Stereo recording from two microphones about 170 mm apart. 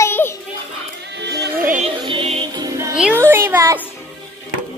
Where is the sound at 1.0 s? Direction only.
90° right.